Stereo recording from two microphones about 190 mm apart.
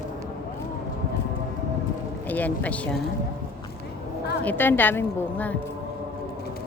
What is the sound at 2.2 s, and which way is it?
Speech, 10° left (ahead or behind).